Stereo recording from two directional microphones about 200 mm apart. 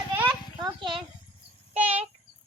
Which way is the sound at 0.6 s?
25° right (ahead or behind).